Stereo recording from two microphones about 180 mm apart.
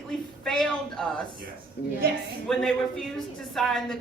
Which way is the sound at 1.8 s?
65° left (ahead or behind).